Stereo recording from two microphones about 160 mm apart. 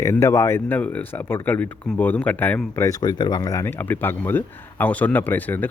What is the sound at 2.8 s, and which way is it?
Speech, 25° left (ahead or behind).